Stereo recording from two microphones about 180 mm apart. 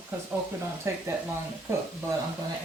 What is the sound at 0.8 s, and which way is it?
Speech, 15° right (ahead or behind).